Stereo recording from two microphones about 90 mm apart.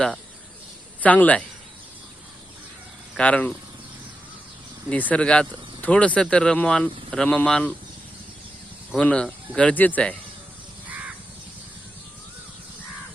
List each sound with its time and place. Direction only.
1.0 s speech: 15° left (ahead or behind)
3.2 s speech: 15° left (ahead or behind)
4.9 s speech: 15° left (ahead or behind)
9.0 s speech: 10° left (ahead or behind)